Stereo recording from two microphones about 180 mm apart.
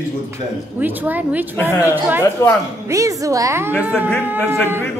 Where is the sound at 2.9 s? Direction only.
20° right (ahead or behind).